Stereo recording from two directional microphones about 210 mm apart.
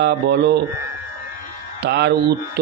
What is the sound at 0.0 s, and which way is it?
Speech, 50° right (ahead or behind).